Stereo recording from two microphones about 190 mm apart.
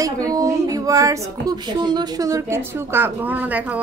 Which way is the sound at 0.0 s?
20° right (ahead or behind).